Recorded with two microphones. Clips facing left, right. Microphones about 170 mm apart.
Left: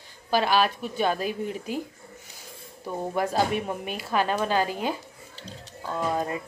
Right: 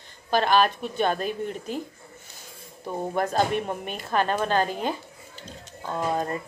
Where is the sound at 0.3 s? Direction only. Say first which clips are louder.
Right 2 dB; 5° left (ahead or behind).